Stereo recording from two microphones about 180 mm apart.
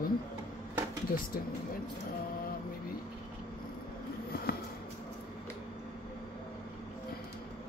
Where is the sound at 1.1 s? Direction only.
55° left (ahead or behind).